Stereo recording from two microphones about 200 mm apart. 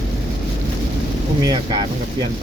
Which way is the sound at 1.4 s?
20° right (ahead or behind).